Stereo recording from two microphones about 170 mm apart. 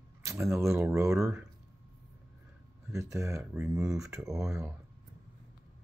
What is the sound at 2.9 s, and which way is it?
Speech, 20° right (ahead or behind).